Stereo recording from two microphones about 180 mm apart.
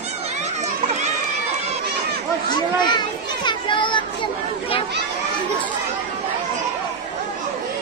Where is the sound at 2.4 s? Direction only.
25° left (ahead or behind).